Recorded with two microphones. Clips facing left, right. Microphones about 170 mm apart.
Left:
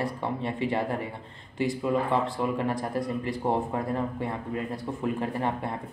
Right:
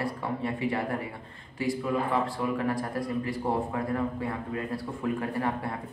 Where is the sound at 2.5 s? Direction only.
25° left (ahead or behind).